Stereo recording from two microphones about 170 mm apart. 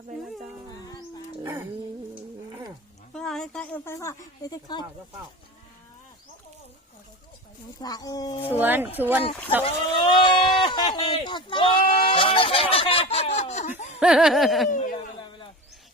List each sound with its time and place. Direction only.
3.1 s a woman's voice: 5° left (ahead or behind); by 4.9 s 25° left (ahead or behind)
7.8 s speech: 20° left (ahead or behind)
8.4 s speech: 10° right (ahead or behind)
9.6 s speech: 30° left (ahead or behind)
14.0 s laughter: 5° right (ahead or behind)
14.9 s a sound: 30° left (ahead or behind)